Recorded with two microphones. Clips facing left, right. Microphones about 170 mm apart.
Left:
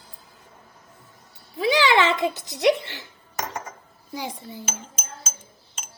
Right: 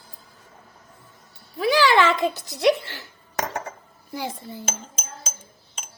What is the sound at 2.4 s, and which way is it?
Speech, 20° left (ahead or behind).